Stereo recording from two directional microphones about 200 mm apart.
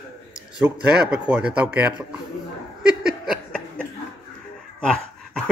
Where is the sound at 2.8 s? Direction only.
5° right (ahead or behind).